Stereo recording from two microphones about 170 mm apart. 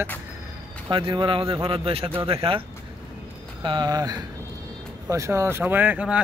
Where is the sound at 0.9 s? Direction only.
30° right (ahead or behind).